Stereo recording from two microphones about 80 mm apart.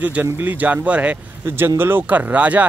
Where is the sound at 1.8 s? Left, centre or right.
Right.